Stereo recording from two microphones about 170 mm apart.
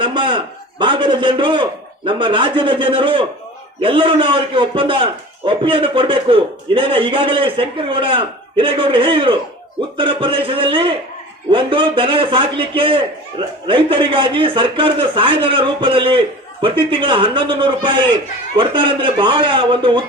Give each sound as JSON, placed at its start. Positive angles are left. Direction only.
{"t": 0.1, "sound": "a man's voice", "side_deg": -30}